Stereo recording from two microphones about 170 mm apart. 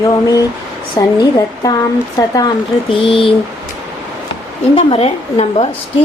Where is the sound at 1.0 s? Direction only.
20° left (ahead or behind).